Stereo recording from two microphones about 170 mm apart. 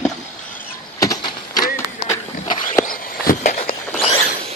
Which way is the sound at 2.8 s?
50° left (ahead or behind).